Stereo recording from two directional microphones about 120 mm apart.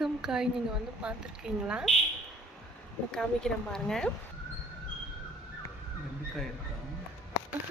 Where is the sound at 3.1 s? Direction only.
5° left (ahead or behind).